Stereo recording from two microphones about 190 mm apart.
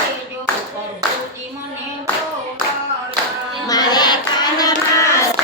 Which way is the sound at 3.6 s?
20° left (ahead or behind).